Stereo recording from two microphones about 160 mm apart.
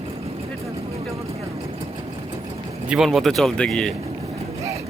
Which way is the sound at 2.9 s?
Centre (ahead or behind).